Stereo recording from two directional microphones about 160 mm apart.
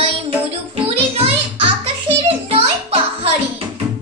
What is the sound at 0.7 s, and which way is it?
Music, 40° right (ahead or behind).